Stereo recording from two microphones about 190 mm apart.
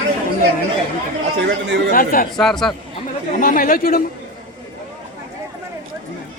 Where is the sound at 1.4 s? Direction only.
70° right (ahead or behind).